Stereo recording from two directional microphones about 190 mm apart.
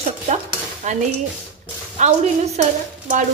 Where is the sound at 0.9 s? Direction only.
40° right (ahead or behind).